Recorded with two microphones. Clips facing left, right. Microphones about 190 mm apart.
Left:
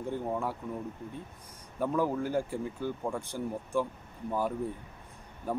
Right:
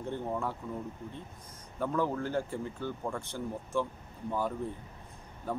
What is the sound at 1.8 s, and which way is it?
Speech, 10° left (ahead or behind).